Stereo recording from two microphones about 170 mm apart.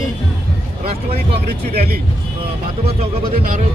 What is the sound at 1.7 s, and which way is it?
Speech, 60° right (ahead or behind).